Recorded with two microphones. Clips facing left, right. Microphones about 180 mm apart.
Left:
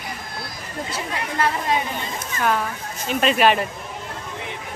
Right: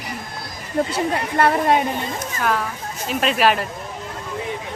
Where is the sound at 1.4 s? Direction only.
55° right (ahead or behind).